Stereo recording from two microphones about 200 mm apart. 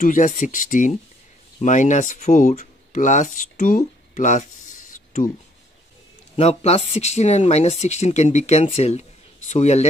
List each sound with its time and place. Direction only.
0.0 s speech: 40° left (ahead or behind)
6.3 s speech: 30° left (ahead or behind)